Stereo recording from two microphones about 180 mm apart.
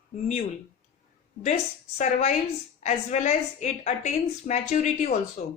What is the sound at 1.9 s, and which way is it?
Speech, 40° left (ahead or behind).